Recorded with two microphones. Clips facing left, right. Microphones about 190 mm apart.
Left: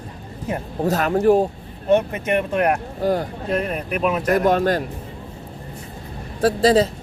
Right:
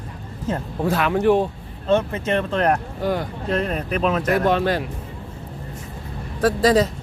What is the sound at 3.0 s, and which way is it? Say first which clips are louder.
Speech: left 5 dB; 40° left (ahead or behind).